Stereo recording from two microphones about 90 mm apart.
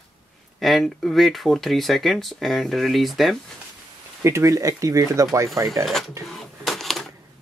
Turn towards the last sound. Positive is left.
turn(degrees=0)  # may be behind; listen again after turning